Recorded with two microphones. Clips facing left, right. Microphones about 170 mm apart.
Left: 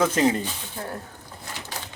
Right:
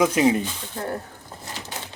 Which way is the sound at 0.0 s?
10° right (ahead or behind).